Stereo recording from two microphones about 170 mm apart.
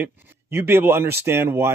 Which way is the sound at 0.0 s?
15° right (ahead or behind).